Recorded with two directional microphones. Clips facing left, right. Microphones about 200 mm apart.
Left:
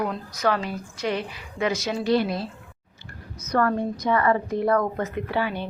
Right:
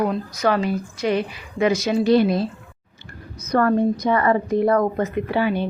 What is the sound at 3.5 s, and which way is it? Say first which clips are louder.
A woman's voice: right 5 dB; 30° right (ahead or behind).